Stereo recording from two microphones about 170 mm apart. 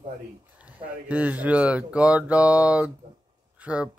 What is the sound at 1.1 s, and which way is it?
Speech, 10° right (ahead or behind).